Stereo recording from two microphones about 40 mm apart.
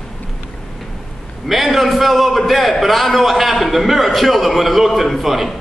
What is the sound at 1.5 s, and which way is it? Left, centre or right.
A man's voice, centre.